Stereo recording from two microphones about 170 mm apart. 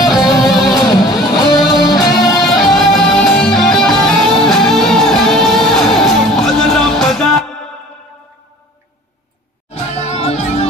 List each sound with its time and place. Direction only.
0.0 s music: centre (ahead or behind)
1.9 s music: 20° left (ahead or behind)
2.4 s music: centre (ahead or behind)
9.7 s music: 40° left (ahead or behind)